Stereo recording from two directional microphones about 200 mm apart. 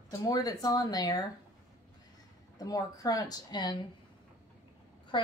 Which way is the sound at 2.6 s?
20° left (ahead or behind).